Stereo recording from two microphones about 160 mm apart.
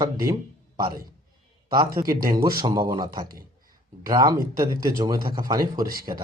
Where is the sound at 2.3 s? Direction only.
25° right (ahead or behind).